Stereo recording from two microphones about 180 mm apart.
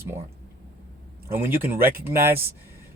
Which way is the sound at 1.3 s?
10° right (ahead or behind).